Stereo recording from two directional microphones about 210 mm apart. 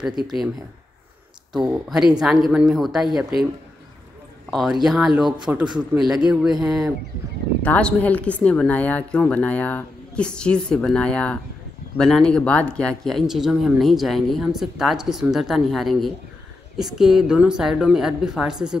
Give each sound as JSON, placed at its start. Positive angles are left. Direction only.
{"t": 0.0, "sound": "speech", "side_deg": 0}
{"t": 1.5, "sound": "speech", "side_deg": 0}
{"t": 4.5, "sound": "a woman's voice", "side_deg": 0}